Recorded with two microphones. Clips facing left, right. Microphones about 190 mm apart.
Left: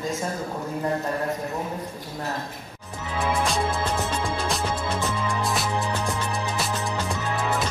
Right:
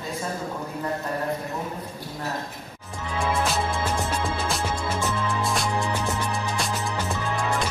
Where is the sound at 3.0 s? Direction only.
Centre (ahead or behind).